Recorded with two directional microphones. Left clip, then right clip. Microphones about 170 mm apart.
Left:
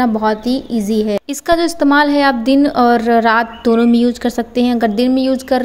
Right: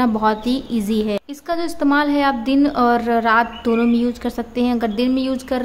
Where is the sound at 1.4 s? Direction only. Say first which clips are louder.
Left 8 dB; 30° left (ahead or behind).